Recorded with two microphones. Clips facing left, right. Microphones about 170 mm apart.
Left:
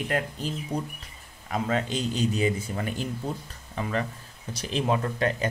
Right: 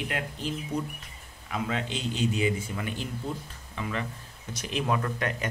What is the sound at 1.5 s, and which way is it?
Speech, 40° left (ahead or behind).